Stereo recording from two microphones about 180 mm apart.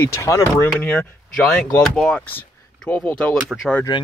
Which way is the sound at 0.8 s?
5° left (ahead or behind).